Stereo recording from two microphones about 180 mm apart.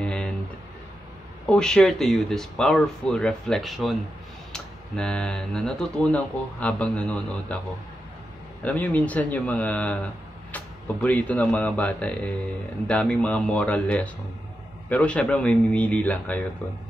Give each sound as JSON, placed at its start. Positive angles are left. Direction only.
{"t": 0.0, "sound": "a sound", "side_deg": 5}
{"t": 1.4, "sound": "speech", "side_deg": 5}
{"t": 8.6, "sound": "a man's voice", "side_deg": 10}